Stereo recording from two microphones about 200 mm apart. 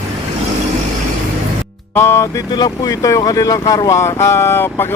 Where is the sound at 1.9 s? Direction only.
10° left (ahead or behind).